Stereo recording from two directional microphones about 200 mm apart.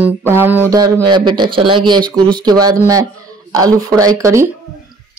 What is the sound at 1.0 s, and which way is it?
Speech, 20° right (ahead or behind).